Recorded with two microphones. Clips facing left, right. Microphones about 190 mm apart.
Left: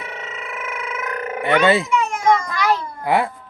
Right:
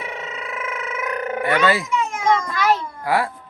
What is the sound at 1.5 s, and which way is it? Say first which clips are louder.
Speech: left 4 dB; 25° left (ahead or behind).